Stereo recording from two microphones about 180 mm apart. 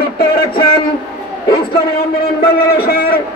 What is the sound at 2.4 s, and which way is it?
Speech, 60° left (ahead or behind).